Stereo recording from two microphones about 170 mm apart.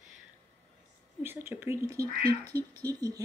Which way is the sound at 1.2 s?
15° right (ahead or behind).